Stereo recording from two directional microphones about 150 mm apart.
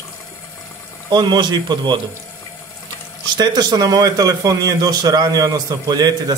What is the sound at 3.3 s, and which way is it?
A man's voice, 30° right (ahead or behind).